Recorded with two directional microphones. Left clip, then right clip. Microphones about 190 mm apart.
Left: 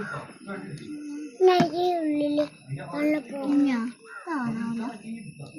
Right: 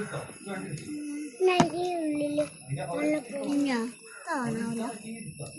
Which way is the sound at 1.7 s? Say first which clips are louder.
Left 5 dB; 30° left (ahead or behind).